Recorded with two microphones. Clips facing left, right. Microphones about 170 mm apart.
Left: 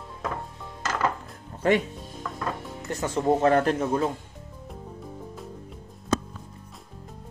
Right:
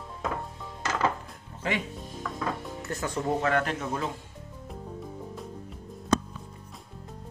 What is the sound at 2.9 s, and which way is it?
Speech, 20° left (ahead or behind).